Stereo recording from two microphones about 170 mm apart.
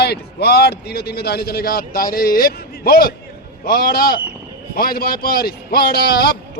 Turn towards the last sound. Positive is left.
turn(degrees=70)  # may be behind; listen again after turning